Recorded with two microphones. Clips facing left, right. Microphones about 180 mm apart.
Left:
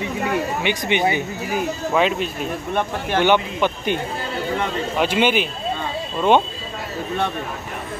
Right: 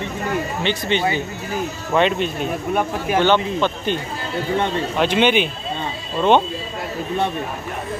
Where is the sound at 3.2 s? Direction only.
15° left (ahead or behind).